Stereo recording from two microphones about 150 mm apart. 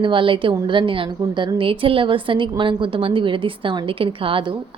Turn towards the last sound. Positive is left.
turn(degrees=-35)  # may be behind; listen again after turning